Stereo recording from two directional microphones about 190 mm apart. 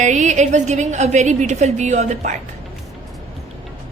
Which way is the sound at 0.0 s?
40° right (ahead or behind).